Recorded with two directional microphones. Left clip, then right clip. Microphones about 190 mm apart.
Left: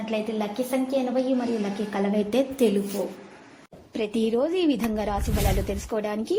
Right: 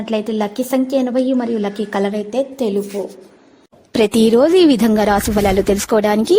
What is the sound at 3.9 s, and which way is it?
A woman's voice, 75° right (ahead or behind).